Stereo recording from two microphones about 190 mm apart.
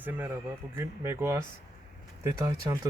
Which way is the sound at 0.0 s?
10° right (ahead or behind).